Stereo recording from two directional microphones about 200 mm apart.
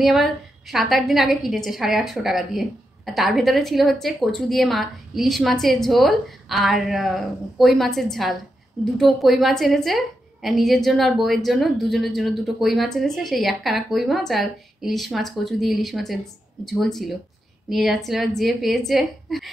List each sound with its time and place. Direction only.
0.0 s a woman's voice: centre (ahead or behind)